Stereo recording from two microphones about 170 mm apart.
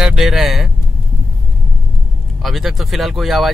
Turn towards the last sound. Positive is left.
turn(degrees=0)  # may be behind; listen again after turning